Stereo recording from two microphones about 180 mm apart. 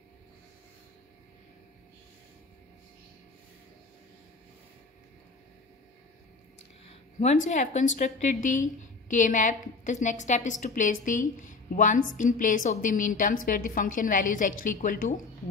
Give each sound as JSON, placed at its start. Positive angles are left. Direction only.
{"t": 6.9, "sound": "a woman's voice", "side_deg": 40}